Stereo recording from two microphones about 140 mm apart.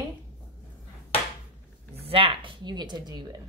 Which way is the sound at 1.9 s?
40° right (ahead or behind).